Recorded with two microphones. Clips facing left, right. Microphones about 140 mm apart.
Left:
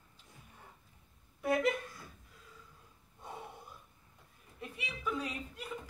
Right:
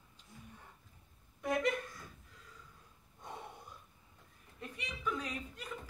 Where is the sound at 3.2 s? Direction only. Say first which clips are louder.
Left 1 dB; 10° left (ahead or behind).